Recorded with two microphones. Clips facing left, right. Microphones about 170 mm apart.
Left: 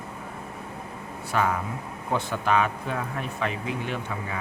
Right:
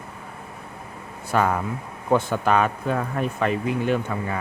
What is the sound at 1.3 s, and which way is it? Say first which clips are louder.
Speech: right 4 dB; 45° right (ahead or behind).